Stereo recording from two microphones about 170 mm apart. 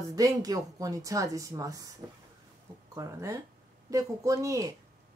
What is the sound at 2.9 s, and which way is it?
A woman's voice, 20° right (ahead or behind).